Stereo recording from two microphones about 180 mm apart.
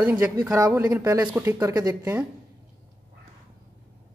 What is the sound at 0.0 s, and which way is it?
Speech, 10° right (ahead or behind).